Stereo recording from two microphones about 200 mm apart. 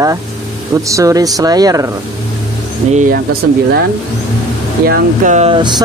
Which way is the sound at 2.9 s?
40° right (ahead or behind).